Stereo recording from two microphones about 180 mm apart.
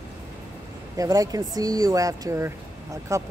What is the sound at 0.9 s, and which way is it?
Speech, 20° right (ahead or behind).